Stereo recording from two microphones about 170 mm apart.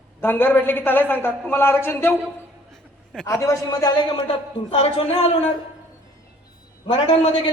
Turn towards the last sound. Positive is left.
turn(degrees=35)  # may be behind; listen again after turning